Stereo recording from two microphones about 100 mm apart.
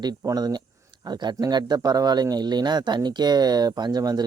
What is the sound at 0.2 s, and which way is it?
Speech, 40° right (ahead or behind).